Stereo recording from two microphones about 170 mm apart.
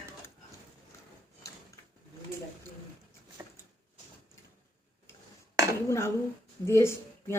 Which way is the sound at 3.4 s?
20° right (ahead or behind).